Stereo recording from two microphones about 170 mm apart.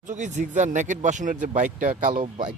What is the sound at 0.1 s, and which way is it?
Speech, 45° right (ahead or behind).